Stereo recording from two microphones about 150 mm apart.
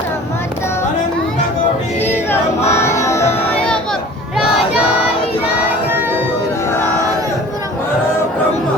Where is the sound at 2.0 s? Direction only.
15° left (ahead or behind).